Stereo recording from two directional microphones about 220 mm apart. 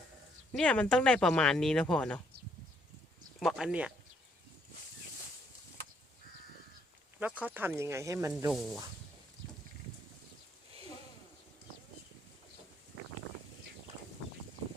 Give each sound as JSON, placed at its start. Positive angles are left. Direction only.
{"t": 0.5, "sound": "speech", "side_deg": 5}
{"t": 3.4, "sound": "speech", "side_deg": -5}
{"t": 7.2, "sound": "speech", "side_deg": -5}